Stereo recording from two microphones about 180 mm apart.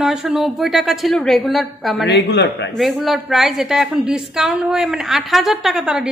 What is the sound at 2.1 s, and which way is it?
Speech, 70° left (ahead or behind).